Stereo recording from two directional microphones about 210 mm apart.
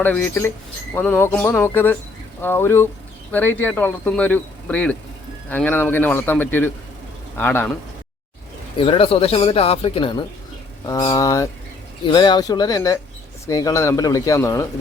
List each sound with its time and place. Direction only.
0.0 s speech: 10° left (ahead or behind)
8.8 s speech: 25° left (ahead or behind)